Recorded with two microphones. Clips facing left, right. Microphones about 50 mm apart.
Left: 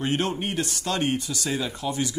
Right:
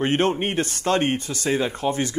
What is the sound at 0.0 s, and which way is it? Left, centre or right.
Speech, right.